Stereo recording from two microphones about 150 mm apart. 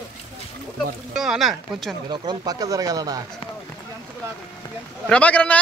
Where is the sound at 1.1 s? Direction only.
Centre (ahead or behind).